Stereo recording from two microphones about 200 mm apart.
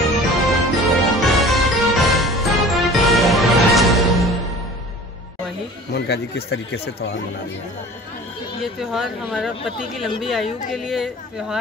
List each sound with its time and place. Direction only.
0.5 s music: centre (ahead or behind)
5.9 s speech: 55° left (ahead or behind)
8.9 s speech: centre (ahead or behind)